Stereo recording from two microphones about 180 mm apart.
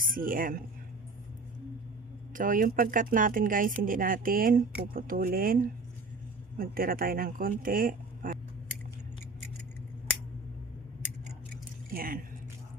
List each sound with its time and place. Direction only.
0.0 s speech: 50° right (ahead or behind)
2.3 s speech: 50° right (ahead or behind)
11.9 s a sound: 55° right (ahead or behind)